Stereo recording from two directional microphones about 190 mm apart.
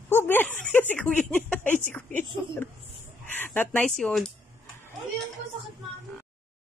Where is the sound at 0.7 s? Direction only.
10° left (ahead or behind).